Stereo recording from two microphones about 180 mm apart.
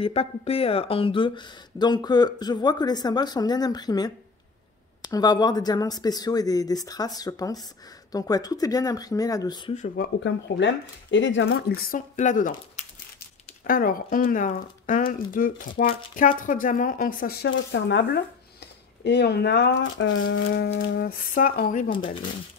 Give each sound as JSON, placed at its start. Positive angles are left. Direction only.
{"t": 0.0, "sound": "speech", "side_deg": 35}
{"t": 9.9, "sound": "speech", "side_deg": 75}
{"t": 17.5, "sound": "speech", "side_deg": 80}
{"t": 21.0, "sound": "speech", "side_deg": 50}